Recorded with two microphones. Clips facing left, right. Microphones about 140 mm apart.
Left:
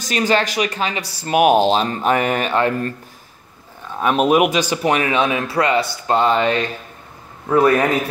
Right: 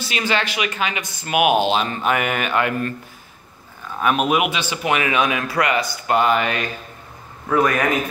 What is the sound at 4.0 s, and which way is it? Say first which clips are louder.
A man's voice: left 4 dB; 30° left (ahead or behind).